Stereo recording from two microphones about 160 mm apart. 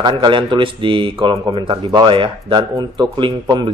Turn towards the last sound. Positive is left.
turn(degrees=-30)  # may be behind; listen again after turning